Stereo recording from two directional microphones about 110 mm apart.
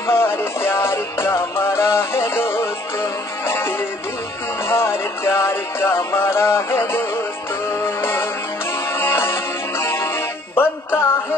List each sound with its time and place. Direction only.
0.0 s music: 20° left (ahead or behind)